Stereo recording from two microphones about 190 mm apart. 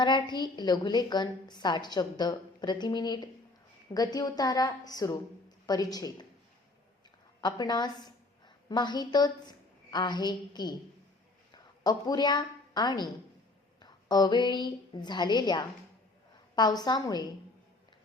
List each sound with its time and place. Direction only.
0.0 s a woman's voice: 25° left (ahead or behind)
7.4 s a woman's voice: 20° left (ahead or behind)
16.8 s a woman's voice: 20° left (ahead or behind)